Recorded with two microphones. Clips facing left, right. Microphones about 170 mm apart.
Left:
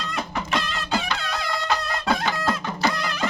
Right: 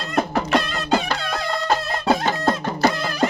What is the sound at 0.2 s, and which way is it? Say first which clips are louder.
Music: right 8 dB; 55° right (ahead or behind).